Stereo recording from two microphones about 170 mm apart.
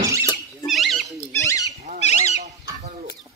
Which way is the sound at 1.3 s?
15° left (ahead or behind).